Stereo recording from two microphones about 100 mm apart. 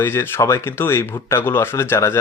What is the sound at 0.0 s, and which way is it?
Speech, 25° left (ahead or behind).